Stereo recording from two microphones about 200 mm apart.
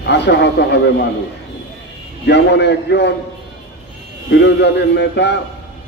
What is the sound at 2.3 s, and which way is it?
Speech, 60° left (ahead or behind).